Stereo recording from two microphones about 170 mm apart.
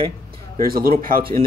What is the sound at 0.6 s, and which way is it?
Speech, 60° right (ahead or behind).